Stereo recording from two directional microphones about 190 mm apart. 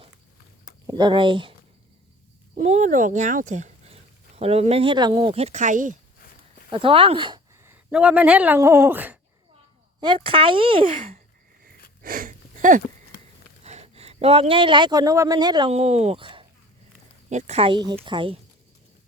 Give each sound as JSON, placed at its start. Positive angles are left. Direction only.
{"t": 0.9, "sound": "speech", "side_deg": -20}
{"t": 2.6, "sound": "speech", "side_deg": -40}
{"t": 6.7, "sound": "speech", "side_deg": -25}
{"t": 7.6, "sound": "speech", "side_deg": -10}
{"t": 10.0, "sound": "speech", "side_deg": -25}
{"t": 10.9, "sound": "speech", "side_deg": -45}
{"t": 12.0, "sound": "a sound", "side_deg": -50}
{"t": 13.7, "sound": "speech", "side_deg": -35}
{"t": 17.2, "sound": "speech", "side_deg": -35}